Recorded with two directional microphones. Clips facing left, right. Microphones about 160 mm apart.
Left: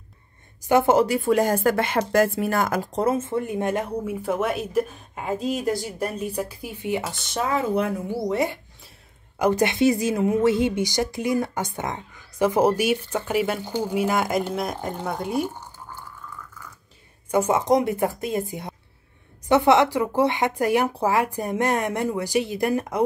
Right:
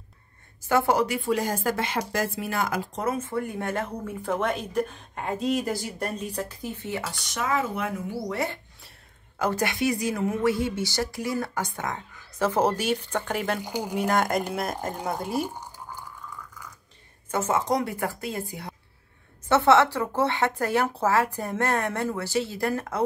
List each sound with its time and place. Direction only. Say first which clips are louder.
0.6 s a woman's voice: left 5 dB; 20° left (ahead or behind)
1.2 s speech: left 6 dB; 55° left (ahead or behind)
2.9 s speech: left 6 dB; 30° left (ahead or behind); by 7.0 s 10° left (ahead or behind)
7.0 s speech: left 4 dB; 25° left (ahead or behind)
8.3 s a woman's voice: left 5 dB; 15° left (ahead or behind)
13.6 s speech: left 4 dB; 10° right (ahead or behind)
13.9 s speech: left 1 dB; 5° left (ahead or behind)
15.6 s a sound: even; 10° right (ahead or behind)
17.3 s a woman's voice: left 5 dB; 15° left (ahead or behind)